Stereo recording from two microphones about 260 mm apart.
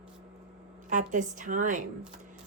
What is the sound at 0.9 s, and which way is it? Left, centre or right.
Speech, right.